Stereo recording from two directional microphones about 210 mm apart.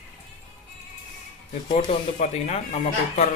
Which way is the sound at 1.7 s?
30° left (ahead or behind).